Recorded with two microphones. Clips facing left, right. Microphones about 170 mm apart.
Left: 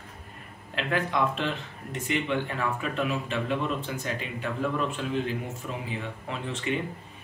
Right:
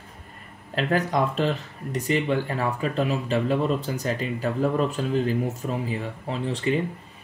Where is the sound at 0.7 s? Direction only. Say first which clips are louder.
Right 4 dB; 40° right (ahead or behind).